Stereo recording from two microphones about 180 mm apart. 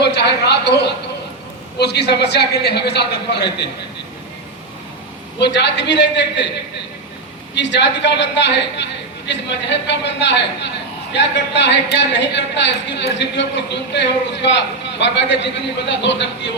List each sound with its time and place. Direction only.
0.0 s a sound: 70° left (ahead or behind)
1.8 s speech: 70° left (ahead or behind)
5.4 s speech: 75° left (ahead or behind)
7.5 s a man's voice: 75° left (ahead or behind)